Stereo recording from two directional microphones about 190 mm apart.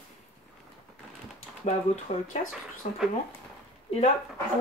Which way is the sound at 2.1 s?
35° left (ahead or behind).